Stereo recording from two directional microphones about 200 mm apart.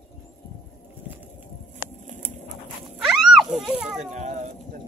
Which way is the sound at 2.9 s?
Centre (ahead or behind).